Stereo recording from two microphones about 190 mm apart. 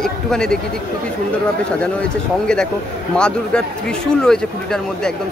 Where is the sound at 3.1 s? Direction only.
5° left (ahead or behind).